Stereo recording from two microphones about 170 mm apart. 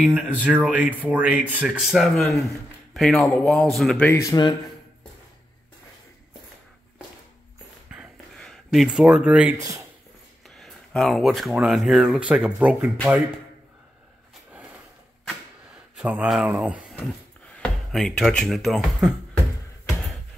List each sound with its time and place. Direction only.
0.0 s speech: 10° right (ahead or behind); by 4.2 s 5° left (ahead or behind)
4.2 s a man's voice: 25° left (ahead or behind)
7.9 s a sound: centre (ahead or behind)
9.6 s speech: 20° right (ahead or behind)
10.6 s speech: 5° left (ahead or behind)
16.0 s speech: 5° right (ahead or behind)
16.9 s speech: 5° left (ahead or behind)